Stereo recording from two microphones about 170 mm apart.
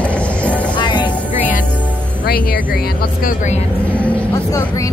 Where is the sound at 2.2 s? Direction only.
65° left (ahead or behind).